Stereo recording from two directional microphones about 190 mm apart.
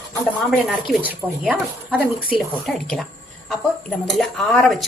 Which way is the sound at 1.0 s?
5° right (ahead or behind).